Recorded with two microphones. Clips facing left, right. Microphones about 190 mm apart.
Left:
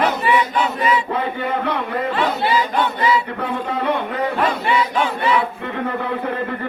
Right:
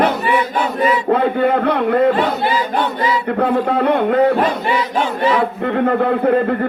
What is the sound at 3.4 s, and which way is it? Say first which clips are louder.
Speech: right 8 dB; 60° right (ahead or behind).